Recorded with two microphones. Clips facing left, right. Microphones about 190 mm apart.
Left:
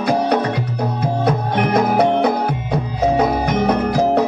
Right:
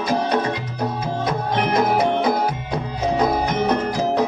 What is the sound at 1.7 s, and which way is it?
Music, 60° left (ahead or behind).